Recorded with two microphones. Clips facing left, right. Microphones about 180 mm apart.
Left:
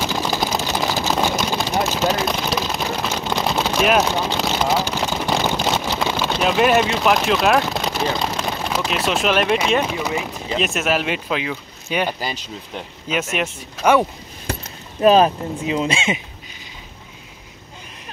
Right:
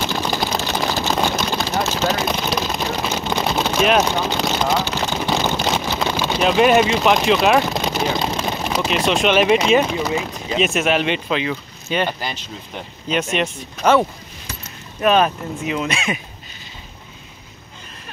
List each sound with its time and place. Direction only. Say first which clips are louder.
0.0 s vehicle: even; 5° left (ahead or behind)
8.5 s speech: right 2 dB; centre (ahead or behind)
10.0 s speech: right 1 dB; 10° left (ahead or behind)
15.0 s speech: left 3 dB; 30° left (ahead or behind)